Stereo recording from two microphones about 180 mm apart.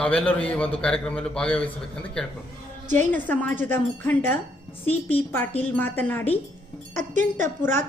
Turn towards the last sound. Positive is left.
turn(degrees=-40)  # may be behind; listen again after turning